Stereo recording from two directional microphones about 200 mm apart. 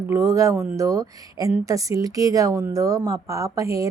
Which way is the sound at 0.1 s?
15° right (ahead or behind).